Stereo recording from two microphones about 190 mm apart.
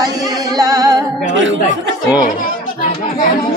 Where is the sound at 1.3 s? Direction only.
75° right (ahead or behind).